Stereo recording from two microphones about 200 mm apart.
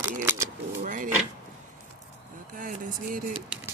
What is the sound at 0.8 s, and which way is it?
Speech, 40° right (ahead or behind).